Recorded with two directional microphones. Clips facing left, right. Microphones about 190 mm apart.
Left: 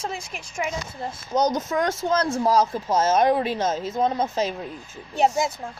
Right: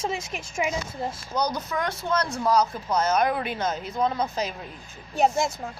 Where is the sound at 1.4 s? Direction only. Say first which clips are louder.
Left 5 dB; 45° left (ahead or behind).